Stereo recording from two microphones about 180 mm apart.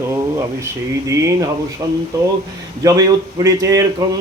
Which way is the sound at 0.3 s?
15° right (ahead or behind).